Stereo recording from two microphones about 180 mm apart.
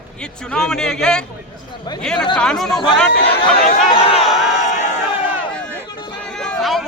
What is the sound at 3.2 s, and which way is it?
Speech, 30° left (ahead or behind).